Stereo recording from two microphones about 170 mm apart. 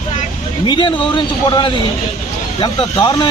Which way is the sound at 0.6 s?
30° left (ahead or behind).